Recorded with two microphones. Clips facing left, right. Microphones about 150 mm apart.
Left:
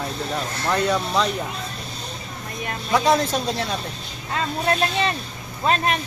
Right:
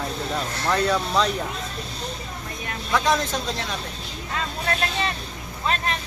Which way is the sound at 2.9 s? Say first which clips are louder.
Left 3 dB; 20° left (ahead or behind).